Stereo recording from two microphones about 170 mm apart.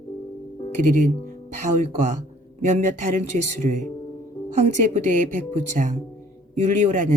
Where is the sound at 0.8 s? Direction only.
50° right (ahead or behind).